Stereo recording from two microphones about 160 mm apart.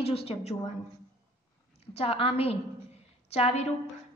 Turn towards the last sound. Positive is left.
turn(degrees=40)  # may be behind; listen again after turning